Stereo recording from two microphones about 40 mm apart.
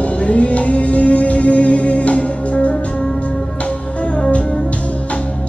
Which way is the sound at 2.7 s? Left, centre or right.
Centre.